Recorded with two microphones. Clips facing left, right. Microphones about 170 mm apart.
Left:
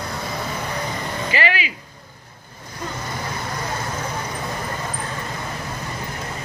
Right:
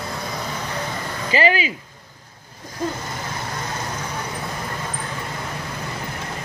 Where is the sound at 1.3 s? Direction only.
35° right (ahead or behind).